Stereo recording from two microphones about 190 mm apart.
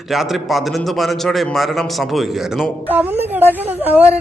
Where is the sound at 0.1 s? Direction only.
Centre (ahead or behind).